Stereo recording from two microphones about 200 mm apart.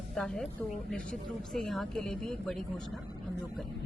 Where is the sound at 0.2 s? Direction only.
5° left (ahead or behind).